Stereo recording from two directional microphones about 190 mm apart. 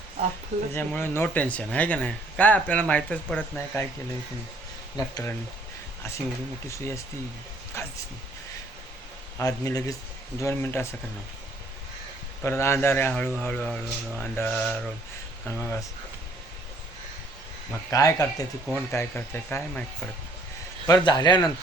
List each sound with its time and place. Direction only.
0.7 s speech: 10° left (ahead or behind)
4.9 s a man's voice: 20° left (ahead or behind)
6.7 s speech: 15° left (ahead or behind)
9.4 s speech: 20° left (ahead or behind)
12.4 s speech: 15° left (ahead or behind)
17.9 s speech: 20° left (ahead or behind)
20.8 s a man's voice: 20° left (ahead or behind)